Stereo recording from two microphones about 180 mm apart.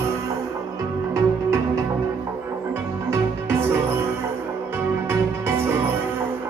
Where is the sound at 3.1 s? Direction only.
15° right (ahead or behind).